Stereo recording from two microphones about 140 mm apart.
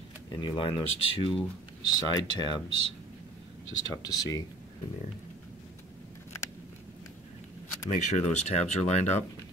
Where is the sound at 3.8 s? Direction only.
25° left (ahead or behind).